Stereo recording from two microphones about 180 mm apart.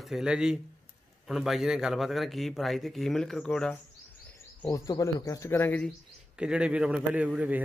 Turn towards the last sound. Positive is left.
turn(degrees=-10)  # may be behind; listen again after turning